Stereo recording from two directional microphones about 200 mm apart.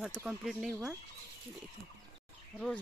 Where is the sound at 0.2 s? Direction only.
5° right (ahead or behind).